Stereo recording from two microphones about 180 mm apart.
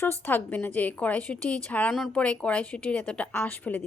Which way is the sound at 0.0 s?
10° left (ahead or behind).